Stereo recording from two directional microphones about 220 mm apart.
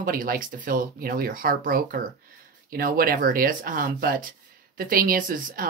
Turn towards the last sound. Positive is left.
turn(degrees=-40)  # may be behind; listen again after turning